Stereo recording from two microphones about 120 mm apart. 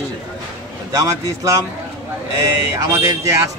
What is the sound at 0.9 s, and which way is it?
Speech, 25° right (ahead or behind).